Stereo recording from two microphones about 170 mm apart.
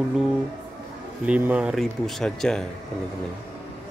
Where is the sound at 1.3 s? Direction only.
10° right (ahead or behind).